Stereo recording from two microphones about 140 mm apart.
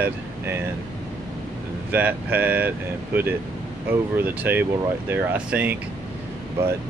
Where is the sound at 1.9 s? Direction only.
10° right (ahead or behind).